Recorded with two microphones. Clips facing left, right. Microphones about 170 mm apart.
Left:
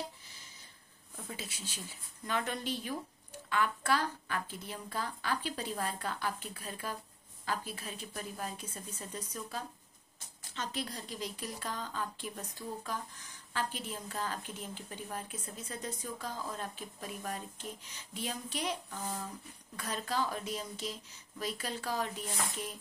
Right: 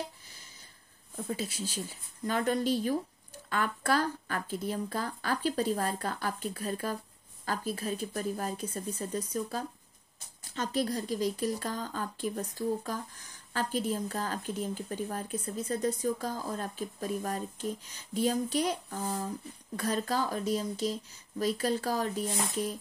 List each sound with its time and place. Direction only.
1.1 s speech: 40° right (ahead or behind)